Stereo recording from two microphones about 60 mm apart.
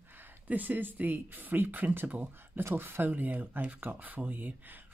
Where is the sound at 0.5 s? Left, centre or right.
Right.